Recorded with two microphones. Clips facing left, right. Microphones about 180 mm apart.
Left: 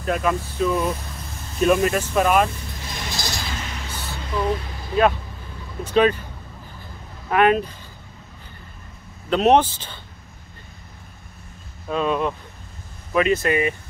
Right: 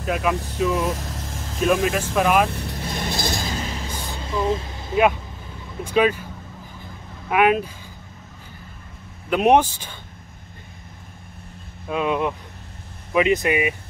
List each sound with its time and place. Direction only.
0.0 s speech: 5° right (ahead or behind)
1.1 s vehicle: 90° right
1.6 s speech: centre (ahead or behind)
2.7 s vehicle: 35° right (ahead or behind)
3.2 s a sound: 50° right (ahead or behind)
3.5 s music: 35° right (ahead or behind)
3.9 s vehicle: 15° right (ahead or behind)
5.9 s speech: 10° right (ahead or behind)
7.2 s speech: 10° right (ahead or behind)
9.3 s speech: 10° right (ahead or behind)
11.9 s speech: 15° right (ahead or behind)